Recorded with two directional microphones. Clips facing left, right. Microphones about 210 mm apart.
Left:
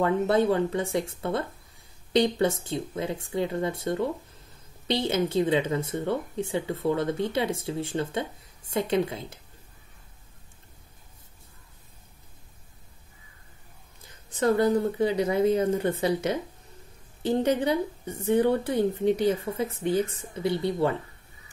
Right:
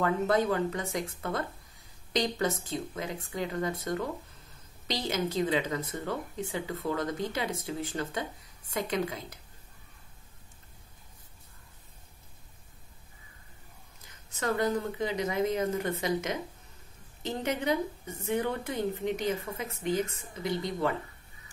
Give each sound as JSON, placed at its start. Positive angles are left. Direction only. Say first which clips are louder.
{"t": 0.0, "sound": "speech", "louder": "left 4 dB", "side_deg": 25}
{"t": 14.0, "sound": "a woman's voice", "louder": "left 8 dB", "side_deg": 30}